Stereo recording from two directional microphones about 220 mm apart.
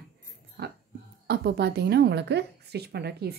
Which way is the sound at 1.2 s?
45° right (ahead or behind).